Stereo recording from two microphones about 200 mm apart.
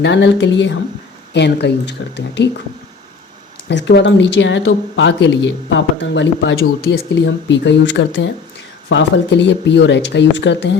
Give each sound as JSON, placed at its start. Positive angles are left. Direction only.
{"t": 0.0, "sound": "speech", "side_deg": 65}
{"t": 3.7, "sound": "speech", "side_deg": 60}